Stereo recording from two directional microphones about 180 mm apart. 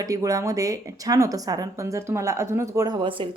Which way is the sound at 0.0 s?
20° right (ahead or behind).